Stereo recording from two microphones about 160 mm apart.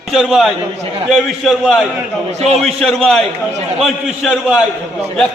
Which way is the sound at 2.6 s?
Centre (ahead or behind).